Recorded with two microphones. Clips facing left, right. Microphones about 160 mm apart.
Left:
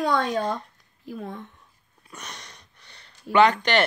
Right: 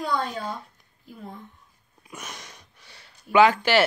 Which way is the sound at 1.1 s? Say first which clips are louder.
Left 6 dB; 90° left.